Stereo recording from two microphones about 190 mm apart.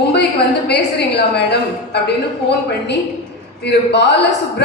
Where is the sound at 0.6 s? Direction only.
60° left (ahead or behind).